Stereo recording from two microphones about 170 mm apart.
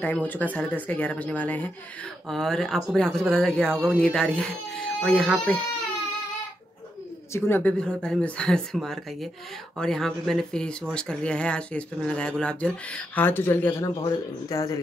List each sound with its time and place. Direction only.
0.0 s speech: 10° left (ahead or behind)
7.3 s speech: 15° left (ahead or behind)